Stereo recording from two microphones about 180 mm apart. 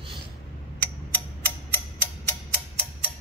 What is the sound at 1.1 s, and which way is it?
Music, 10° left (ahead or behind).